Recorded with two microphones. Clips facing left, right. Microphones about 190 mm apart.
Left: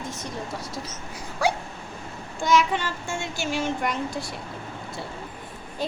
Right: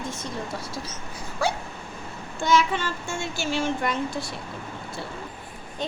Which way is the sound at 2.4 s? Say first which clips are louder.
Even; 15° left (ahead or behind).